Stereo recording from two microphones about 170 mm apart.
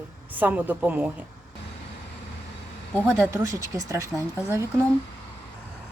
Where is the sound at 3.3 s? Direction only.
20° right (ahead or behind).